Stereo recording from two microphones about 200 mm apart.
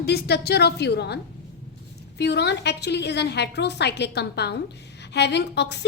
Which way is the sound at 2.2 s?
55° left (ahead or behind).